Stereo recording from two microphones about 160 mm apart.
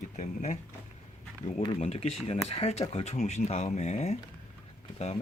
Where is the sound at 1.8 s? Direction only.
40° left (ahead or behind).